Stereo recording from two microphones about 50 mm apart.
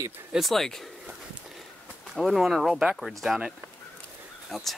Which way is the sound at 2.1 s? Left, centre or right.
Centre.